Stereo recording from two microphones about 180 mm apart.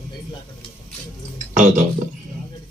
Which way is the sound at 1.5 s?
40° right (ahead or behind).